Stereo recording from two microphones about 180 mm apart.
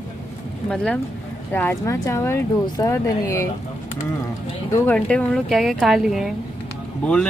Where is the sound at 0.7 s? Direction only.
5° left (ahead or behind).